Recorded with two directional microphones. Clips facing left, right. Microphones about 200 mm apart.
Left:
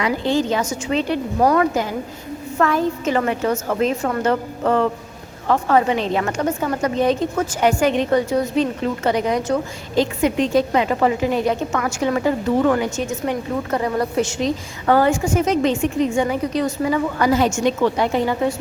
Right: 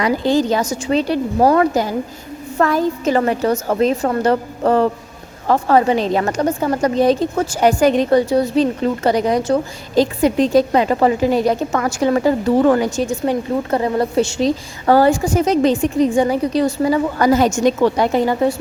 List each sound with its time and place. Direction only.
0.0 s a woman's voice: 40° right (ahead or behind)